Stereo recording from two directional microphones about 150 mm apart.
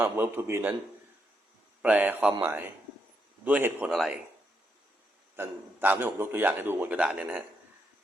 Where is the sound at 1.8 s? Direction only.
10° right (ahead or behind).